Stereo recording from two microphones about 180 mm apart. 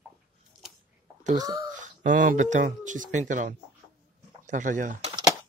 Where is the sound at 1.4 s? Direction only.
20° right (ahead or behind).